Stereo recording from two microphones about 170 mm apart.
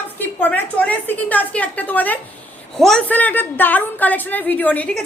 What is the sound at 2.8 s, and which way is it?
A woman's voice, 5° left (ahead or behind).